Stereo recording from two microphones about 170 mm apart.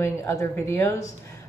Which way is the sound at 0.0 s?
15° left (ahead or behind).